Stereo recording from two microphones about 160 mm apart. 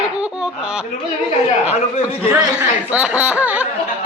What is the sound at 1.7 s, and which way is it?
Speech, 40° left (ahead or behind).